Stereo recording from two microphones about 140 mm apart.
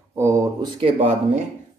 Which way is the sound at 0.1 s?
20° right (ahead or behind).